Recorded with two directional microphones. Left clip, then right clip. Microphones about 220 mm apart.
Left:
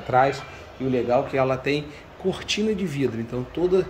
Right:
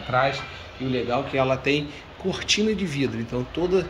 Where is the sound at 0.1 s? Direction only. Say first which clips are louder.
Left 3 dB; 25° left (ahead or behind).